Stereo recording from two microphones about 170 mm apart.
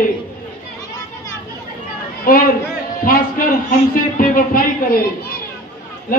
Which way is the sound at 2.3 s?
55° left (ahead or behind).